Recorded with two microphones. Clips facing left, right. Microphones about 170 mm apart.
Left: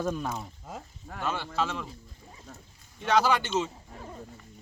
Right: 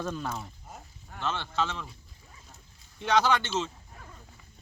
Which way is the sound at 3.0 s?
5° left (ahead or behind).